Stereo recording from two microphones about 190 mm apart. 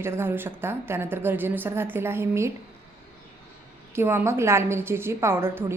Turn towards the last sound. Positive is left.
turn(degrees=-15)  # may be behind; listen again after turning